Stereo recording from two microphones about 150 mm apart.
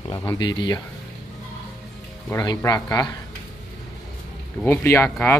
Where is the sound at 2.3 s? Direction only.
20° left (ahead or behind).